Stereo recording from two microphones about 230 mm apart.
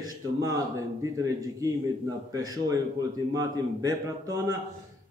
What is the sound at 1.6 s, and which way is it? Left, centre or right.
Speech, centre.